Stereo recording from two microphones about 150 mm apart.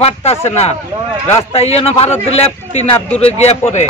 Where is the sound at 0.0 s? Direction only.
45° left (ahead or behind).